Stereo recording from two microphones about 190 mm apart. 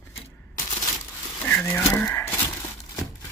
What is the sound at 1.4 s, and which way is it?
Livestock, 10° left (ahead or behind).